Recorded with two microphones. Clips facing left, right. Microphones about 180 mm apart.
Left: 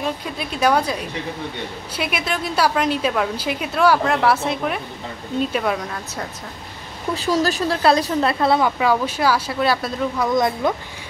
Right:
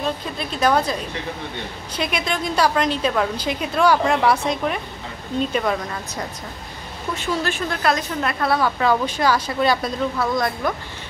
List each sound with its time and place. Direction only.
0.0 s a woman's voice: 10° left (ahead or behind)
7.2 s a woman's voice: 40° left (ahead or behind); by 8.7 s 20° left (ahead or behind)
8.7 s speech: 5° left (ahead or behind)
10.1 s speech: 20° left (ahead or behind)